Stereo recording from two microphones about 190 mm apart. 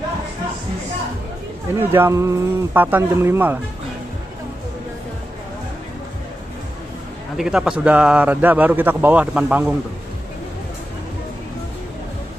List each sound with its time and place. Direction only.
1.8 s a man's voice: 10° right (ahead or behind)
7.3 s a man's voice: 5° right (ahead or behind)